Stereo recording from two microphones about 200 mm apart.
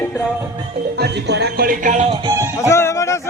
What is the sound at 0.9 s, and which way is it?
Speech, 55° right (ahead or behind).